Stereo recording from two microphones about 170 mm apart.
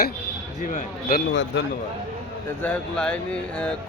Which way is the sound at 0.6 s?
55° left (ahead or behind).